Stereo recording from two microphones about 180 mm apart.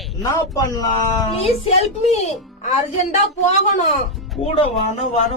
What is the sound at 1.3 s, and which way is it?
Speech, 30° left (ahead or behind).